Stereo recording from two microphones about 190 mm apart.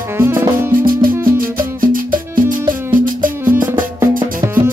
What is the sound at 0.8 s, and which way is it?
Music, 50° right (ahead or behind).